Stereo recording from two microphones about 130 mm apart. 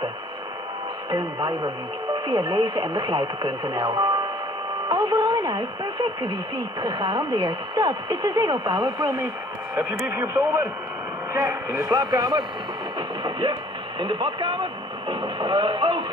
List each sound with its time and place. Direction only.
1.1 s speech: 30° right (ahead or behind)
9.8 s a man's voice: 20° right (ahead or behind)
13.2 s radio: 35° right (ahead or behind)